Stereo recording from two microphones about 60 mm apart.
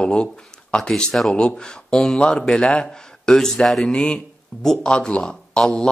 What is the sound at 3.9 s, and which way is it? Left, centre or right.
Speech, centre.